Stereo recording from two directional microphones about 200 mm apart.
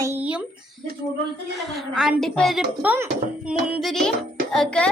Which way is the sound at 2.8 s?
10° right (ahead or behind).